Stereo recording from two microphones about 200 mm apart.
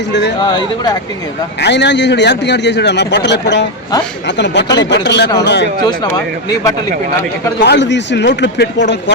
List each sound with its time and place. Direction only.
0.1 s a man's voice: 60° left (ahead or behind)
0.4 s speech: 20° left (ahead or behind)
1.6 s a man's voice: 60° left (ahead or behind)
5.8 s speech: 20° left (ahead or behind)
7.6 s a man's voice: 60° left (ahead or behind)